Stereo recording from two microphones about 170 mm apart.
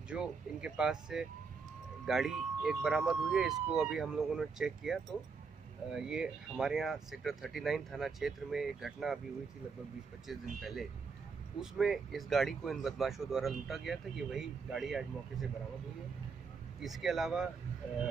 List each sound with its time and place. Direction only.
0.1 s speech: 5° right (ahead or behind)
10.2 s speech: centre (ahead or behind)
16.8 s speech: centre (ahead or behind)